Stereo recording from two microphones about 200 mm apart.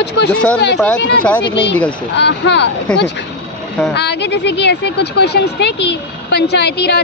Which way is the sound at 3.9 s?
60° left (ahead or behind).